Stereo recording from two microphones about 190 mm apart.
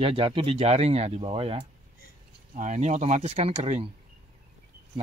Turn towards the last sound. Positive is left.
turn(degrees=-35)  # may be behind; listen again after turning